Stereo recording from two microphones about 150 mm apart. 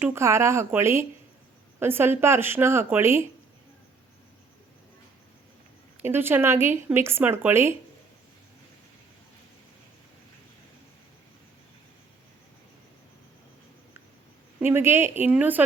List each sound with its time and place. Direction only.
0.0 s speech: 15° right (ahead or behind)
6.0 s speech: 15° right (ahead or behind)
14.6 s speech: 15° right (ahead or behind)